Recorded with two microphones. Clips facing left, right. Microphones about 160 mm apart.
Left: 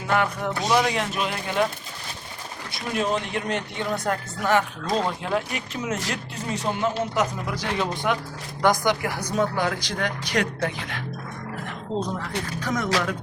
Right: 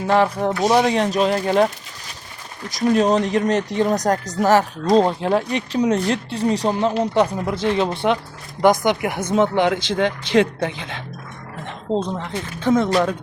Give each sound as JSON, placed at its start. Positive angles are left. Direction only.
{"t": 0.1, "sound": "speech", "side_deg": -30}
{"t": 11.6, "sound": "a sound", "side_deg": -25}
{"t": 12.5, "sound": "speech", "side_deg": -25}